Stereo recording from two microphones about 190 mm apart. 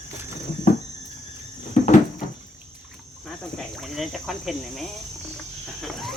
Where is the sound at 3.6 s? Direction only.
Centre (ahead or behind).